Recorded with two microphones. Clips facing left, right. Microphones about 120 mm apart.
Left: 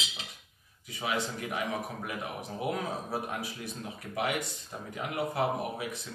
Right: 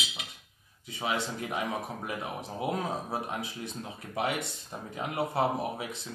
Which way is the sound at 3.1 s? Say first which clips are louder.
Even; 25° right (ahead or behind).